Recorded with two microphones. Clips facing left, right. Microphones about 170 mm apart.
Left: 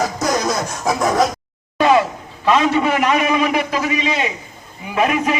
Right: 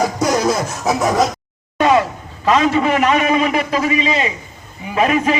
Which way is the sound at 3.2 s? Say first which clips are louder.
Right 1 dB; 35° right (ahead or behind).